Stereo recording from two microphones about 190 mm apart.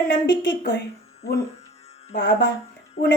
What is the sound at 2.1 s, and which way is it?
Speech, 65° left (ahead or behind).